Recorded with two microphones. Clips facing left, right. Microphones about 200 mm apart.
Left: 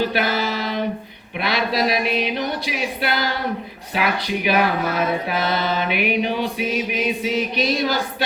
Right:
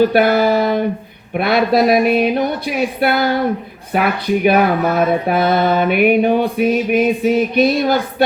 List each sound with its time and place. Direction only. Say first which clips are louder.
0.0 s speech: right 9 dB; 50° right (ahead or behind)